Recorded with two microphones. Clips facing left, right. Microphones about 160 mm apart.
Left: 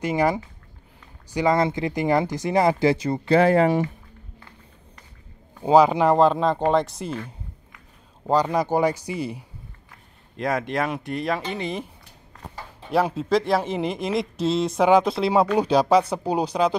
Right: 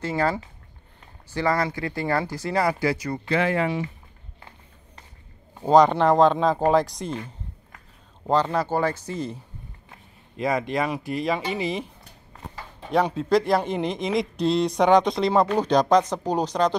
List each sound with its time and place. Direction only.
0.0 s speech: 15° left (ahead or behind)
3.3 s speech: 40° left (ahead or behind)
5.6 s speech: 5° left (ahead or behind)
8.3 s speech: 10° left (ahead or behind)
10.3 s speech: centre (ahead or behind)
12.9 s speech: 5° left (ahead or behind)